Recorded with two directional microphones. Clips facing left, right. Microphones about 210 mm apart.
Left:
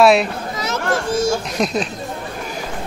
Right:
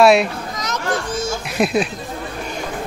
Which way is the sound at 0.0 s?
Centre (ahead or behind).